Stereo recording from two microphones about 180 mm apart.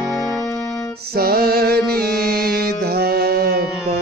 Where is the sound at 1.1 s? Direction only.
60° right (ahead or behind).